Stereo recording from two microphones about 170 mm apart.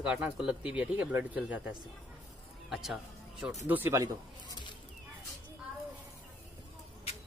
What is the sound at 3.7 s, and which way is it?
Speech, 15° right (ahead or behind).